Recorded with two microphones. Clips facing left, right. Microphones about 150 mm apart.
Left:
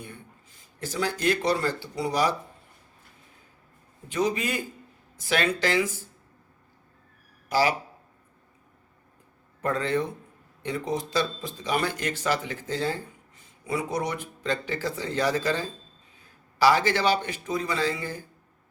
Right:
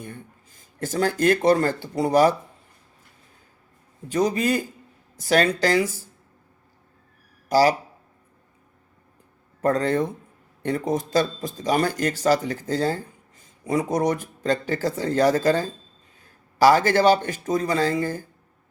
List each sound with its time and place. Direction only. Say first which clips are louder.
0.8 s speech: right 7 dB; 50° right (ahead or behind)
4.1 s speech: right 5 dB; 40° right (ahead or behind)
7.5 s speech: right 6 dB; 40° right (ahead or behind)
9.6 s speech: right 5 dB; 40° right (ahead or behind)